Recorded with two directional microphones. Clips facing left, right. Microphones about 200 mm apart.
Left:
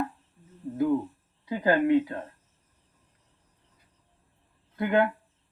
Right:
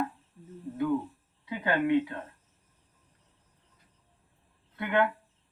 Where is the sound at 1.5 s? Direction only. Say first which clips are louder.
Left 4 dB; 35° left (ahead or behind).